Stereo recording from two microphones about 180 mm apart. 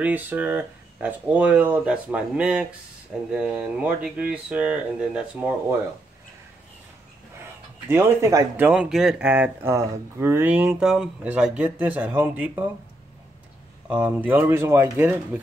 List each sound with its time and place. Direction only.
0.0 s speech: 10° right (ahead or behind)
7.9 s speech: 15° right (ahead or behind)
13.8 s speech: 10° right (ahead or behind)